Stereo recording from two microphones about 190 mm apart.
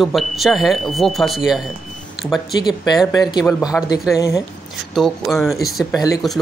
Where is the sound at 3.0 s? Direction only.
20° left (ahead or behind).